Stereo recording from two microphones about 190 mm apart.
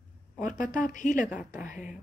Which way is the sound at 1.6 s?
40° left (ahead or behind).